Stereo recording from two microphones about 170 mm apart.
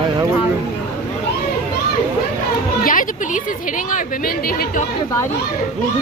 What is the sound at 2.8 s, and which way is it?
A woman's voice, 55° left (ahead or behind).